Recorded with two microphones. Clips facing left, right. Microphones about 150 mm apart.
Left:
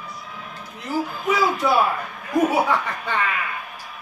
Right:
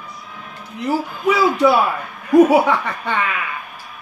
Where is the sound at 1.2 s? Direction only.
70° right (ahead or behind).